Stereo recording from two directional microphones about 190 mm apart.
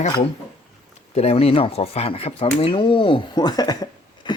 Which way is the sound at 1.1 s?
35° left (ahead or behind).